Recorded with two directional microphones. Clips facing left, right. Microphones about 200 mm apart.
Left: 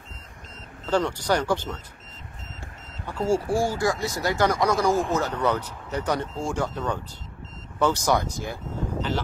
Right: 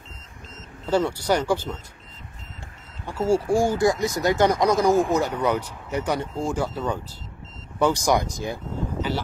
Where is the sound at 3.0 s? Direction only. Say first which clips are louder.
Right 2 dB; 10° right (ahead or behind).